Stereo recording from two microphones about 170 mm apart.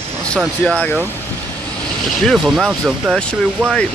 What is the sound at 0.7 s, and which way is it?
Speech, 5° left (ahead or behind).